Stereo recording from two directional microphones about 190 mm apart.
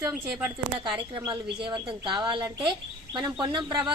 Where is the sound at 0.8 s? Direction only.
25° right (ahead or behind).